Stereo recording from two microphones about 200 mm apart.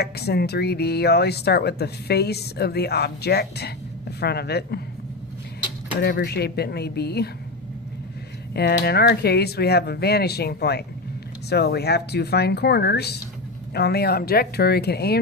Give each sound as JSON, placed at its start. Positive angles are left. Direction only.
{"t": 0.0, "sound": "speech", "side_deg": 55}
{"t": 5.9, "sound": "speech", "side_deg": 55}
{"t": 8.5, "sound": "speech", "side_deg": 55}